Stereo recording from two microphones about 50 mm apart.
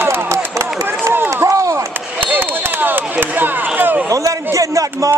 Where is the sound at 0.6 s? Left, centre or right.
Right.